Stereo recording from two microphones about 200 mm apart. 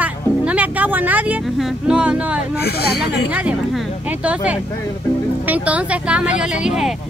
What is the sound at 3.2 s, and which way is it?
A woman's voice, 5° right (ahead or behind).